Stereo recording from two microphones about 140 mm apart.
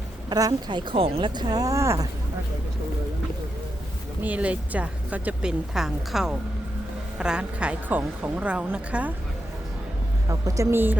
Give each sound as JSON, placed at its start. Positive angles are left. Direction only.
{"t": 0.3, "sound": "speech", "side_deg": -30}
{"t": 4.2, "sound": "speech", "side_deg": -10}
{"t": 10.2, "sound": "a woman's voice", "side_deg": -25}